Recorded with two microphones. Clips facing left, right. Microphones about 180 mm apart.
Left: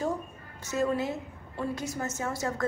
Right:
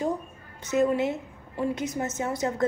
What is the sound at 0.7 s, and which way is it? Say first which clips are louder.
A woman's voice: right 5 dB; 20° right (ahead or behind).